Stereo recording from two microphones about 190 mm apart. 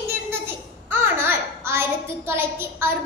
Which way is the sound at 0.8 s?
10° right (ahead or behind).